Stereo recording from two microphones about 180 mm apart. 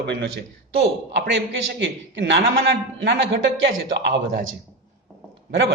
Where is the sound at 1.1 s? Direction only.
85° right.